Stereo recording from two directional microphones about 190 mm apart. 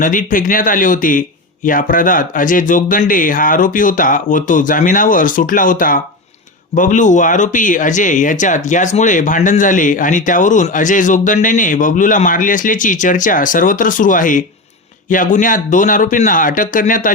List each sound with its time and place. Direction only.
0.0 s speech: 45° left (ahead or behind)